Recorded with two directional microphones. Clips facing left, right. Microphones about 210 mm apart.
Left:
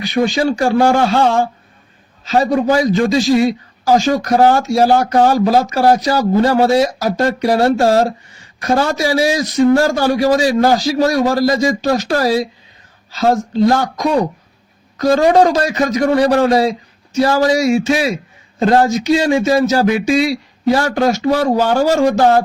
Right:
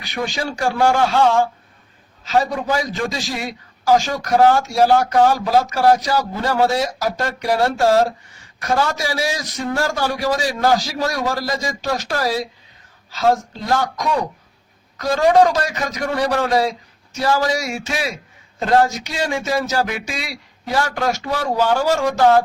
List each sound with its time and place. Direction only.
0.2 s a man's voice: 30° left (ahead or behind)
13.7 s a man's voice: 35° left (ahead or behind)